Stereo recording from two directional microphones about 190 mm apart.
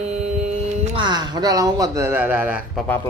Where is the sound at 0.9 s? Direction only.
25° right (ahead or behind); by 2.8 s 5° right (ahead or behind).